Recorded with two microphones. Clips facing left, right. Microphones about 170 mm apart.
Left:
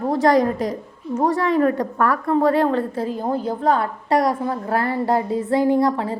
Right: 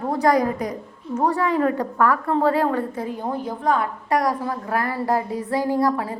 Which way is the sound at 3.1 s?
30° left (ahead or behind).